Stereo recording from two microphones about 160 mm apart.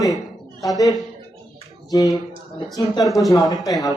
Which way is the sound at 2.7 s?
20° left (ahead or behind).